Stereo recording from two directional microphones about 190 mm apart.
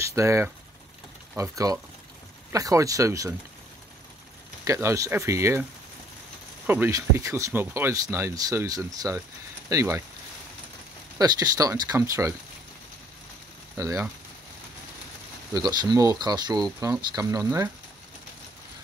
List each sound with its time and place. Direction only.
0.0 s speech: 15° right (ahead or behind)
4.6 s speech: 15° right (ahead or behind)
11.1 s speech: 20° right (ahead or behind)
13.7 s speech: 15° right (ahead or behind)
15.5 s speech: 20° right (ahead or behind)